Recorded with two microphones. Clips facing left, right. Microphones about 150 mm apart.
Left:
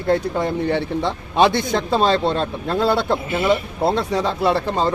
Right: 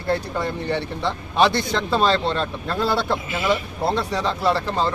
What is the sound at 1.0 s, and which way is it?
Speech, 20° left (ahead or behind).